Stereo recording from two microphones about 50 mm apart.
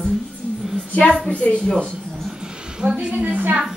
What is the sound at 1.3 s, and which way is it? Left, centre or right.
Speech, left.